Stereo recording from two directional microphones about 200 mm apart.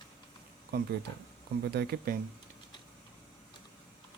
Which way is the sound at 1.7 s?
55° right (ahead or behind).